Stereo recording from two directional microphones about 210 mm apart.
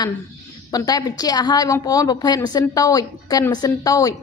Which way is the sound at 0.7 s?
20° left (ahead or behind).